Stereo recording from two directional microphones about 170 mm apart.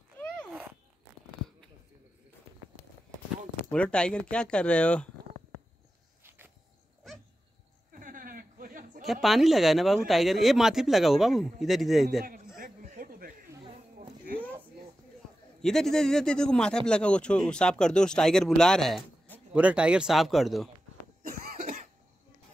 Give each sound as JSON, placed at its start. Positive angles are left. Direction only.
{"t": 3.7, "sound": "speech", "side_deg": 5}
{"t": 6.2, "sound": "a sound", "side_deg": -15}
{"t": 7.0, "sound": "dog", "side_deg": 0}
{"t": 7.9, "sound": "a sound", "side_deg": -55}
{"t": 9.0, "sound": "speech", "side_deg": 0}
{"t": 12.5, "sound": "a sound", "side_deg": -50}
{"t": 15.6, "sound": "speech", "side_deg": 5}
{"t": 19.5, "sound": "speech", "side_deg": -5}
{"t": 21.2, "sound": "cough", "side_deg": -55}